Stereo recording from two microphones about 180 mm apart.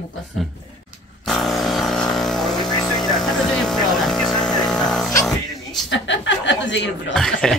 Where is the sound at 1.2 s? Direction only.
Centre (ahead or behind).